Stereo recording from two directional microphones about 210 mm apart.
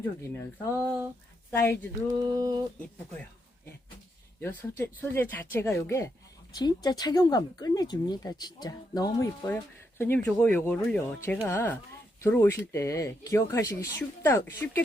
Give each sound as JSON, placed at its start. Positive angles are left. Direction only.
{"t": 0.2, "sound": "speech", "side_deg": 15}
{"t": 2.0, "sound": "a sound", "side_deg": -15}
{"t": 4.4, "sound": "speech", "side_deg": 10}